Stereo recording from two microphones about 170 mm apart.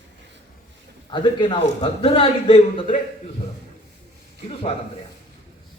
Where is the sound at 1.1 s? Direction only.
30° left (ahead or behind).